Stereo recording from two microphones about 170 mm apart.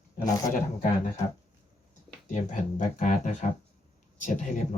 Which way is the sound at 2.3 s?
45° left (ahead or behind).